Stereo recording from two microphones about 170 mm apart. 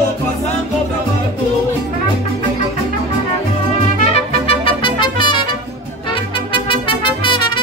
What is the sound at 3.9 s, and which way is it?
Trumpet, 35° left (ahead or behind).